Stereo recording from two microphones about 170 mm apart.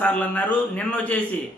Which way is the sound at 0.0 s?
10° left (ahead or behind).